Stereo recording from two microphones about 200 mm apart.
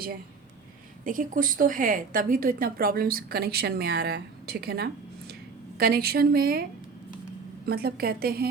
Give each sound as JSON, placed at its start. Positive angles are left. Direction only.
{"t": 1.0, "sound": "a woman's voice", "side_deg": -40}